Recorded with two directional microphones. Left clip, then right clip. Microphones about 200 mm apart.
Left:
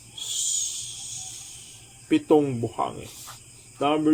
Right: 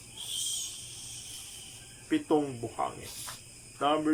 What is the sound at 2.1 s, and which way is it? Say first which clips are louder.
Speech: left 7 dB; 15° left (ahead or behind).